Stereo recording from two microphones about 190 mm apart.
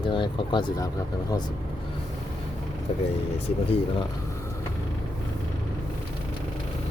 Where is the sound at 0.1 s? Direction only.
25° left (ahead or behind).